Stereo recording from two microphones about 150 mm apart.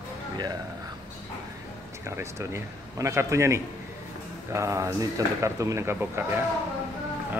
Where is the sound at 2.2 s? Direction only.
20° right (ahead or behind).